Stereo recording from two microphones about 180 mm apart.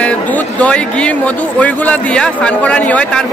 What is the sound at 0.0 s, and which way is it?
A man's voice, 5° left (ahead or behind).